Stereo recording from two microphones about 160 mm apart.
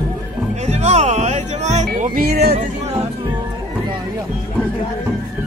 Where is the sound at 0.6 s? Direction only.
45° right (ahead or behind); by 2.5 s 70° right (ahead or behind).